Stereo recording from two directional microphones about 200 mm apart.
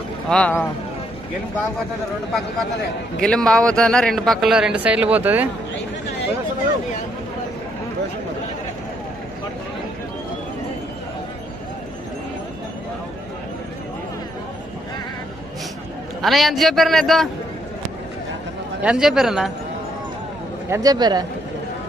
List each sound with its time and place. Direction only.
0.3 s speech: 10° left (ahead or behind)
3.2 s speech: 5° left (ahead or behind)
16.2 s speech: centre (ahead or behind)
18.8 s speech: 5° right (ahead or behind)
20.7 s speech: 20° right (ahead or behind)